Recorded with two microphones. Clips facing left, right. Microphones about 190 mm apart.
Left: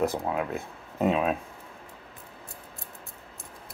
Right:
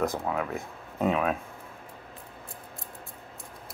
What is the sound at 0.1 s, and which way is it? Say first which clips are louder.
Speech: left 1 dB; 15° left (ahead or behind).